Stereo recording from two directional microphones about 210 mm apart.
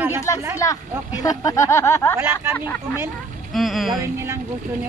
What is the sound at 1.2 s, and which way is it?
Speech, 15° left (ahead or behind).